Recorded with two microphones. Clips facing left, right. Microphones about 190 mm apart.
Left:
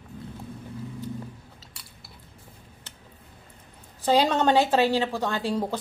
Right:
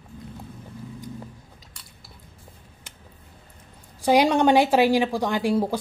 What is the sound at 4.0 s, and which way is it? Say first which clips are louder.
A woman's voice: right 3 dB; 10° right (ahead or behind).